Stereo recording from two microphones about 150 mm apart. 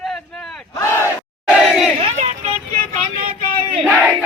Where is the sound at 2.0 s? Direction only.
45° right (ahead or behind).